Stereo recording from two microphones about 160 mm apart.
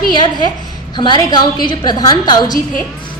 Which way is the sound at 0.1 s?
25° left (ahead or behind).